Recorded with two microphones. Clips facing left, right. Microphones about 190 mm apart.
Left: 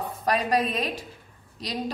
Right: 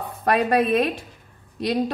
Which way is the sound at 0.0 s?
60° right (ahead or behind).